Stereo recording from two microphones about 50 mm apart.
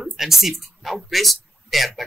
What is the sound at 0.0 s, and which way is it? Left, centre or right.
Speech, centre.